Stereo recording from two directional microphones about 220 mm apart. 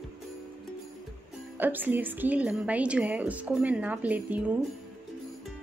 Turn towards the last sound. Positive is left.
turn(degrees=-5)  # may be behind; listen again after turning